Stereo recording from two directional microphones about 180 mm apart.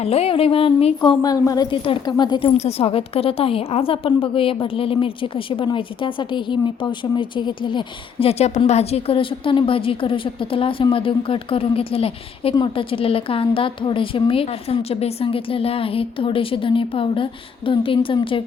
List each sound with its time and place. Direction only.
0.0 s a woman's voice: 35° left (ahead or behind)
1.2 s a woman's voice: 20° left (ahead or behind)